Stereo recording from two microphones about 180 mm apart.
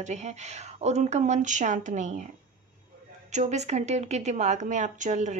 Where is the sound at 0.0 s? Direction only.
40° right (ahead or behind).